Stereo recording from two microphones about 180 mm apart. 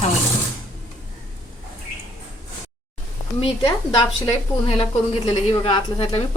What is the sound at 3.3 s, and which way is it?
Speech, 30° left (ahead or behind).